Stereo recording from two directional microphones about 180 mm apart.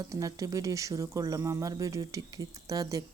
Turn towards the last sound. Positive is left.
turn(degrees=-20)  # may be behind; listen again after turning